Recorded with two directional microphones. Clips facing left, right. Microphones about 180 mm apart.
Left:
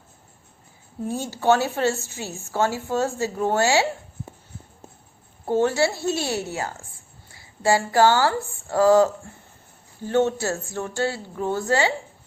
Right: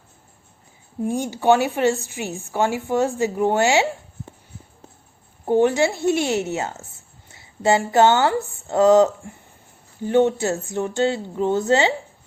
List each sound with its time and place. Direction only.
1.0 s a woman's voice: 15° right (ahead or behind)
5.5 s a woman's voice: 15° right (ahead or behind)